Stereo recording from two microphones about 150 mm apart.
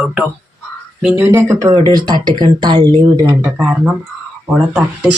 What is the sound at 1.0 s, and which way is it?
Speech, 10° right (ahead or behind).